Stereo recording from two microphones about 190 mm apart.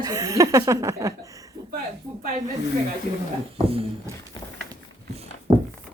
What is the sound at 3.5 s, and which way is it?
Speech, 30° right (ahead or behind).